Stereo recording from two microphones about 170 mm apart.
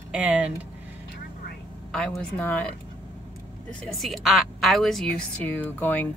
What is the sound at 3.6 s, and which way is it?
A woman's voice, centre (ahead or behind).